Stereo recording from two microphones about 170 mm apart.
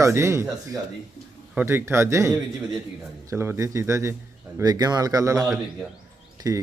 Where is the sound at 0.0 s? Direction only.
15° right (ahead or behind).